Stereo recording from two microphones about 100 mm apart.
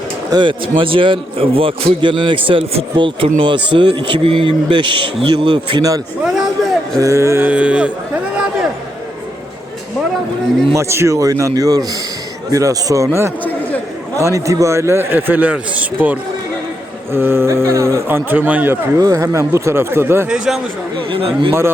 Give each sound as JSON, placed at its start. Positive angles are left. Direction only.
{"t": 0.3, "sound": "a man's voice", "side_deg": -50}
{"t": 6.2, "sound": "a sound", "side_deg": 0}
{"t": 7.0, "sound": "a man's voice", "side_deg": -30}
{"t": 7.4, "sound": "speech", "side_deg": -15}
{"t": 10.8, "sound": "speech", "side_deg": -25}
{"t": 13.4, "sound": "a sound", "side_deg": 15}
{"t": 14.2, "sound": "a man's voice", "side_deg": -30}
{"t": 18.9, "sound": "a man's voice", "side_deg": -35}
{"t": 20.2, "sound": "speech", "side_deg": -5}
{"t": 21.1, "sound": "a man's voice", "side_deg": -65}